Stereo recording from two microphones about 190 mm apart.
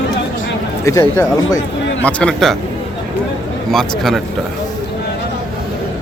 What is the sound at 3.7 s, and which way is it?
Speech, centre (ahead or behind).